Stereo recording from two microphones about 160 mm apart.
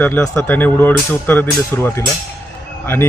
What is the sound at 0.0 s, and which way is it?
Speech, 10° left (ahead or behind).